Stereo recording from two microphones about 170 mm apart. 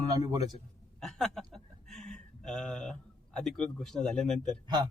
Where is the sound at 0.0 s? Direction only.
20° right (ahead or behind).